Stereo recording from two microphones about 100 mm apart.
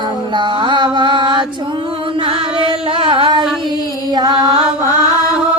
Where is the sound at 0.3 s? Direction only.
50° right (ahead or behind).